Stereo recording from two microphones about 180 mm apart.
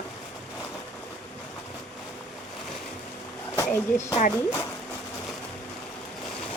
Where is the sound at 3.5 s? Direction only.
15° left (ahead or behind).